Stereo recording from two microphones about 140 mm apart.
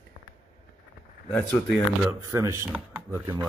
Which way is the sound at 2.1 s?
20° right (ahead or behind).